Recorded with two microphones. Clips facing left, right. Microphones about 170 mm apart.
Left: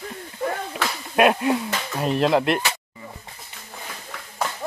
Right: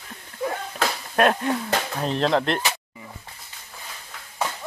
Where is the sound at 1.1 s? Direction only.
10° left (ahead or behind).